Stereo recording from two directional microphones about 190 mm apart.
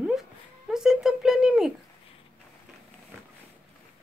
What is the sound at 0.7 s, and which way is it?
Speech, centre (ahead or behind).